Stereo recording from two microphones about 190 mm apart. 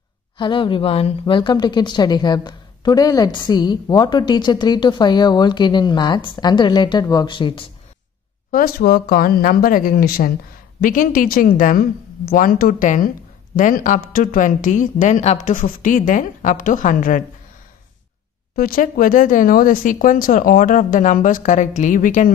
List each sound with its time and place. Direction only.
0.4 s a woman's voice: 25° left (ahead or behind)
8.5 s speech: 50° left (ahead or behind)
18.6 s speech: 50° left (ahead or behind)